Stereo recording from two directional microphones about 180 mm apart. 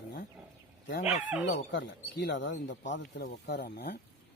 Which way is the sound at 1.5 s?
85° left.